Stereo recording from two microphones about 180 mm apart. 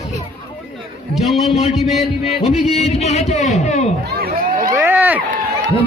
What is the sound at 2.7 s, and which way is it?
A man's voice, 35° left (ahead or behind).